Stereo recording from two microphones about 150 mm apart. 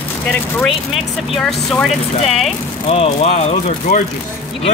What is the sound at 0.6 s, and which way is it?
Speech, centre (ahead or behind).